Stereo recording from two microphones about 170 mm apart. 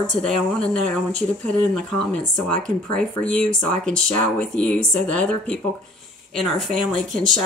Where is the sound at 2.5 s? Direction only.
5° left (ahead or behind).